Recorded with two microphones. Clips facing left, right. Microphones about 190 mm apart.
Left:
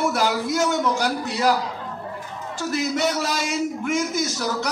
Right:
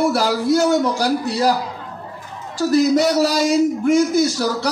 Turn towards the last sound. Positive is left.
turn(degrees=-30)  # may be behind; listen again after turning